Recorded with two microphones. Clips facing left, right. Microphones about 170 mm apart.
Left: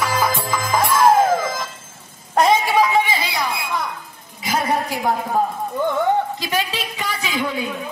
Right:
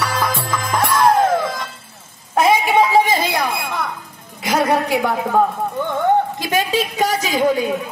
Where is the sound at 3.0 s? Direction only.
45° right (ahead or behind).